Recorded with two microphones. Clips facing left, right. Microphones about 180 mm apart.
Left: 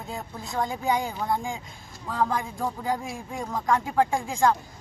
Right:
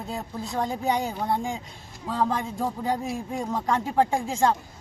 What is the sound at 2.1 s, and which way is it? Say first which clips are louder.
A man's voice: right 1 dB; 30° right (ahead or behind).